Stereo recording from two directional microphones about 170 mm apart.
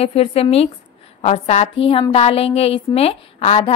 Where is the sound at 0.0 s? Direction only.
35° left (ahead or behind).